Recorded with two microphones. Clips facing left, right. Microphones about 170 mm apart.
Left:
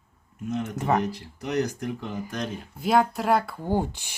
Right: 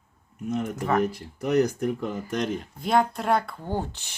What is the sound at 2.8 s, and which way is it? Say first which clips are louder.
Speech: left 2 dB; 5° left (ahead or behind).